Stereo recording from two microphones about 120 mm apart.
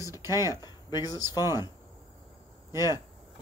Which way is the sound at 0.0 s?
30° left (ahead or behind).